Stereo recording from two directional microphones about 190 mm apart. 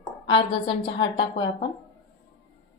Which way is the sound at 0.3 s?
25° left (ahead or behind).